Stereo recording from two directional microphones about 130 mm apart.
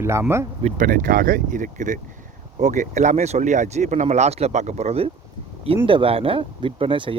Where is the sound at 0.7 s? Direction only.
90° right.